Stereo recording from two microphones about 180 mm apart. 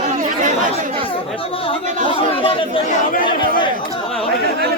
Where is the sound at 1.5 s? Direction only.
30° left (ahead or behind).